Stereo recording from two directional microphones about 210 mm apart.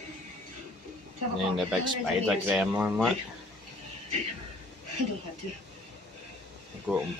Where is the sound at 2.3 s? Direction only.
5° right (ahead or behind).